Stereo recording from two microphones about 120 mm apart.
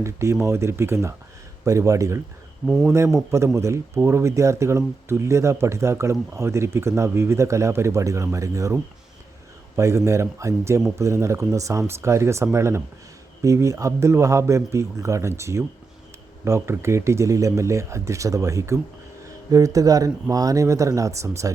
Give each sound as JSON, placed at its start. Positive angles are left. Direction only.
{"t": 0.0, "sound": "speech", "side_deg": -25}